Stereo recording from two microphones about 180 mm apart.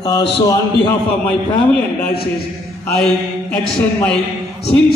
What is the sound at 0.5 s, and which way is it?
A man's voice, 10° left (ahead or behind).